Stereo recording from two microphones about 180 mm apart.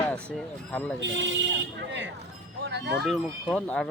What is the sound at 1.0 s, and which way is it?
Speech, 85° right.